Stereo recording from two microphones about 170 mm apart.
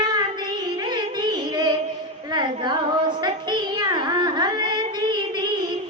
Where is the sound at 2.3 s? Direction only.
25° right (ahead or behind).